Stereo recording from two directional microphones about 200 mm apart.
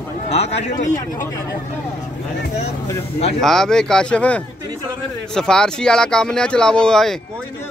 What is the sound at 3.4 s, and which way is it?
Speech, centre (ahead or behind).